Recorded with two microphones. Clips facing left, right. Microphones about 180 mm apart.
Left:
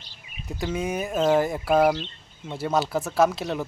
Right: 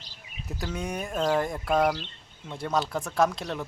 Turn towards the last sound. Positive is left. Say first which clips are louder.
# left 4 dB
turn(degrees=5)  # may be behind; listen again after turning